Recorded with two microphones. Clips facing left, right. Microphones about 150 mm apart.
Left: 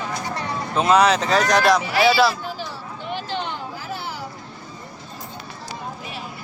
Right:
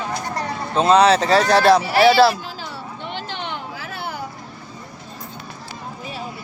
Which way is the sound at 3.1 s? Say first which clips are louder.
Left 4 dB; 65° right (ahead or behind).